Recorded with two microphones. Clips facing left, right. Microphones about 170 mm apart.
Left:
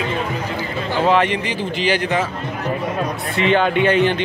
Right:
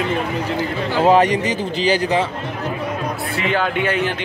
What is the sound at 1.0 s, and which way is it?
Speech, 40° right (ahead or behind).